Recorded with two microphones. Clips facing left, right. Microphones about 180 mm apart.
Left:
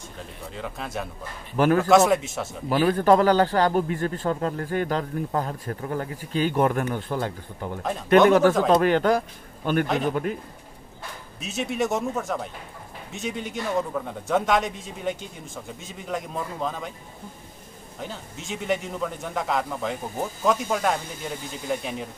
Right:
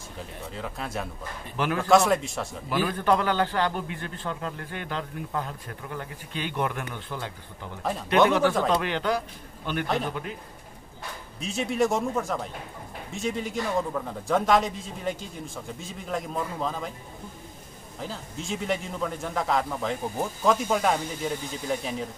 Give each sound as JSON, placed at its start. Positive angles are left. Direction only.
{"t": 0.6, "sound": "a man's voice", "side_deg": 0}
{"t": 2.7, "sound": "a man's voice", "side_deg": 45}
{"t": 11.3, "sound": "a man's voice", "side_deg": 0}
{"t": 18.0, "sound": "a man's voice", "side_deg": 0}